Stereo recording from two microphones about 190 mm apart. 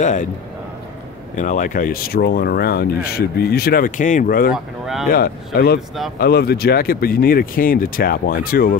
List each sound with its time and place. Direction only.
0.0 s a man's voice: 40° left (ahead or behind)
1.3 s speech: 40° left (ahead or behind)